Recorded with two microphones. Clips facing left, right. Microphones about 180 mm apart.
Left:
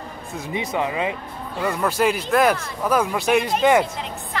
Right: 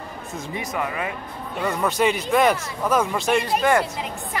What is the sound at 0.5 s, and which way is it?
Speech, 20° left (ahead or behind).